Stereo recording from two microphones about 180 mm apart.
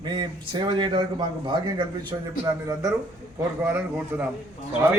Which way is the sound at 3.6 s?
10° right (ahead or behind).